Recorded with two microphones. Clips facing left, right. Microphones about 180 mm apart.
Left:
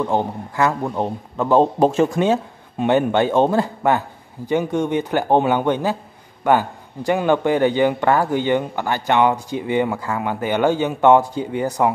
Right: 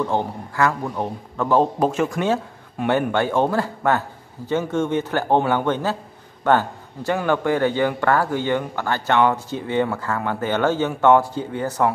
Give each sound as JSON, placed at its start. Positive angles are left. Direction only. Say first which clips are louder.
{"t": 0.0, "sound": "a man's voice", "louder": "left 2 dB", "side_deg": 15}